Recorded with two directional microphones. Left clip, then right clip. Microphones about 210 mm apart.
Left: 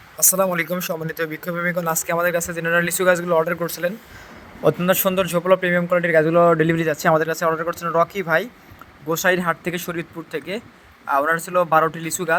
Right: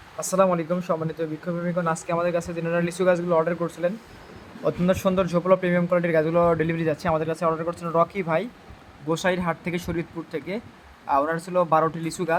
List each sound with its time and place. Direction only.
0.6 s speech: 40° left (ahead or behind)
4.6 s a man's voice: 20° left (ahead or behind)